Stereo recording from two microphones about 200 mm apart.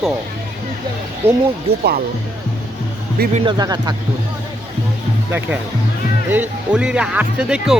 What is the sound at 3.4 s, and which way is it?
Speech, 20° right (ahead or behind).